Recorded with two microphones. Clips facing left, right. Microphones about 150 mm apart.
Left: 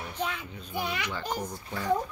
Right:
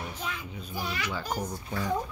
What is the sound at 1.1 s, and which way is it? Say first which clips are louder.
Speech: even; 10° right (ahead or behind).